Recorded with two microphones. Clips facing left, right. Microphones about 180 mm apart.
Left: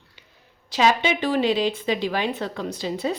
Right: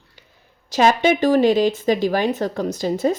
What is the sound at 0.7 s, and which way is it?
Speech, 45° right (ahead or behind).